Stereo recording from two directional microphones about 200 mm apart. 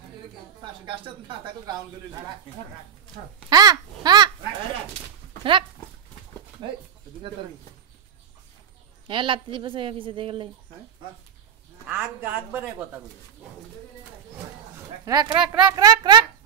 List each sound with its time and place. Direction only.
0.8 s speech: 25° right (ahead or behind)
3.4 s speech: 20° right (ahead or behind)
5.4 s speech: 25° right (ahead or behind)
9.0 s speech: 25° right (ahead or behind)
11.9 s speech: 10° right (ahead or behind)
15.0 s speech: 20° right (ahead or behind)
15.4 s a woman's voice: 5° right (ahead or behind)
15.7 s speech: 20° right (ahead or behind)